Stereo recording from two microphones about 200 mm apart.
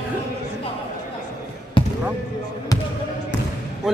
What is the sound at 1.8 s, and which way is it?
Basketball bounce, 25° left (ahead or behind).